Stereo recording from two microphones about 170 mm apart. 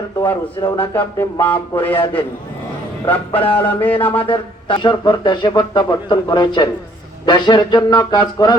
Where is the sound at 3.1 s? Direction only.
30° left (ahead or behind).